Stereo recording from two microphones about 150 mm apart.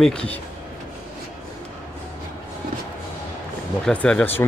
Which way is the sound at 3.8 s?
5° left (ahead or behind).